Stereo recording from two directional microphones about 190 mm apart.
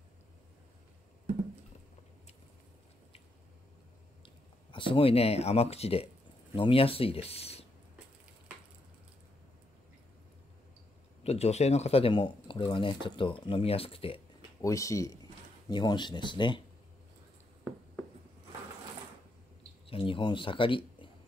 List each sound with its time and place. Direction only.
4.6 s speech: 25° left (ahead or behind)
11.2 s speech: 35° left (ahead or behind)
14.6 s speech: 15° left (ahead or behind)
19.9 s speech: 25° left (ahead or behind)